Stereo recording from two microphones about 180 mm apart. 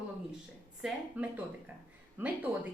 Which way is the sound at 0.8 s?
5° right (ahead or behind).